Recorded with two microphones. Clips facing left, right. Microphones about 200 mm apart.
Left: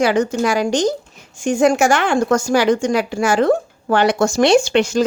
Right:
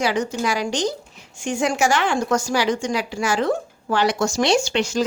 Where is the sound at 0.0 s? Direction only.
50° left (ahead or behind).